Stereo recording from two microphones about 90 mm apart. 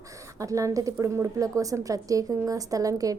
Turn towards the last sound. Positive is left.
turn(degrees=-40)  # may be behind; listen again after turning